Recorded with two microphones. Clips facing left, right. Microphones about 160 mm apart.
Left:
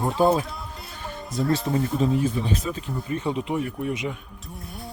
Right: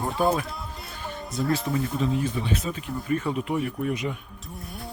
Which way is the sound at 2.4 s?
35° left (ahead or behind).